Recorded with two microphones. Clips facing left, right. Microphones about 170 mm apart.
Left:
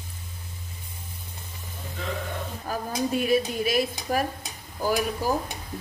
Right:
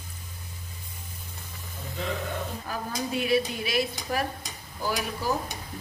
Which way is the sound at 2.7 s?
45° left (ahead or behind).